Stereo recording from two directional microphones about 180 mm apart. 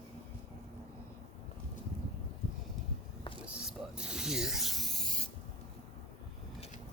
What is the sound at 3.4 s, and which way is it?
Rub, 5° right (ahead or behind).